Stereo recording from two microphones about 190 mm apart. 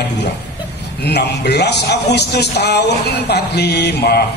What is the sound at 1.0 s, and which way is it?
Speech, 60° left (ahead or behind).